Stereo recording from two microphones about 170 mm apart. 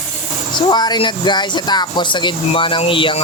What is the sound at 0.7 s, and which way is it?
Speech, 25° left (ahead or behind).